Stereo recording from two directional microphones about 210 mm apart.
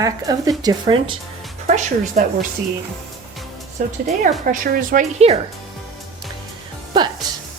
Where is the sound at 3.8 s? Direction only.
40° right (ahead or behind).